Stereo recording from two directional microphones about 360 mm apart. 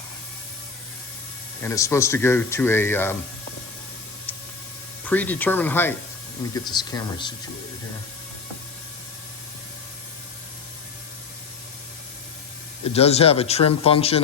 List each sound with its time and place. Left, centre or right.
1.6 s speech: centre
5.0 s speech: centre
12.9 s speech: centre